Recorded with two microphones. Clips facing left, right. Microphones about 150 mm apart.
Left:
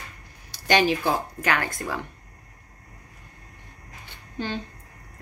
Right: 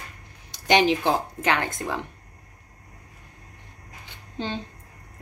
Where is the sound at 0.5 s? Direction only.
20° right (ahead or behind).